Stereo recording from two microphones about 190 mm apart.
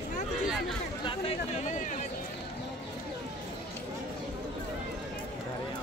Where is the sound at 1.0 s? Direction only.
30° left (ahead or behind).